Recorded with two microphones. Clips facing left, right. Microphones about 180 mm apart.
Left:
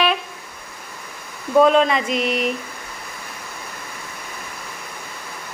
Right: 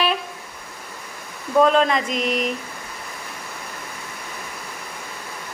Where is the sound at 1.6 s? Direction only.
Centre (ahead or behind).